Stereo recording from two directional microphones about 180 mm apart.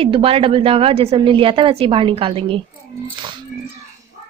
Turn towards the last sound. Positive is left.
turn(degrees=-25)  # may be behind; listen again after turning